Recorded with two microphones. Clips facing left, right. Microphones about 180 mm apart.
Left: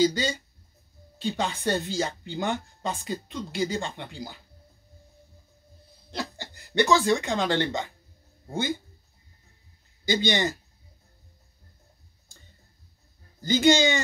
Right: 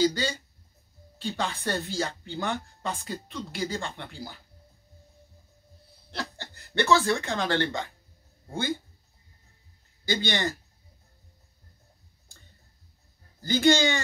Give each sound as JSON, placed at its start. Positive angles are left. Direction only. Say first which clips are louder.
{"t": 0.0, "sound": "speech", "louder": "left 2 dB", "side_deg": 15}
{"t": 6.1, "sound": "speech", "louder": "left 2 dB", "side_deg": 15}
{"t": 10.0, "sound": "speech", "louder": "left 3 dB", "side_deg": 20}
{"t": 13.4, "sound": "speech", "louder": "left 2 dB", "side_deg": 20}